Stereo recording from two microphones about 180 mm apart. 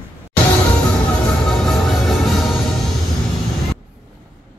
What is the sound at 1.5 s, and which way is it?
Music, centre (ahead or behind).